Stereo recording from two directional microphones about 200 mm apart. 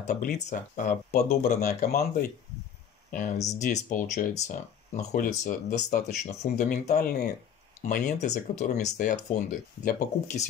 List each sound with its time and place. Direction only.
0.0 s speech: 35° left (ahead or behind)
1.9 s speech: 50° left (ahead or behind)